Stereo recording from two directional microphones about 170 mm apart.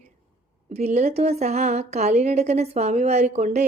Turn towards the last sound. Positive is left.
turn(degrees=-45)  # may be behind; listen again after turning